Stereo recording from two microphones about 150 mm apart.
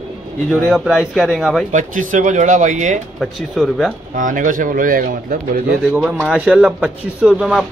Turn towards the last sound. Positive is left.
turn(degrees=-5)  # may be behind; listen again after turning